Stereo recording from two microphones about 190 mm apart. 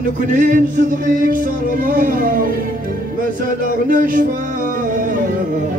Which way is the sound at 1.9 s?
45° right (ahead or behind).